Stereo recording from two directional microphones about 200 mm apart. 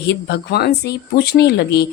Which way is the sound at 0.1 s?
55° left (ahead or behind).